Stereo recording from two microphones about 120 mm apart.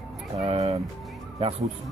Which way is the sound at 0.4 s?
60° right (ahead or behind).